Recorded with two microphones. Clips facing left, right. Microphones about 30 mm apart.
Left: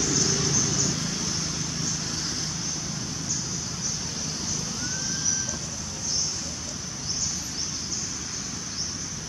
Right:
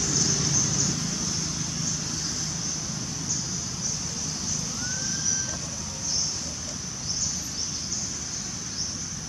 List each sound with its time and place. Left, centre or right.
0.0 s vehicle: centre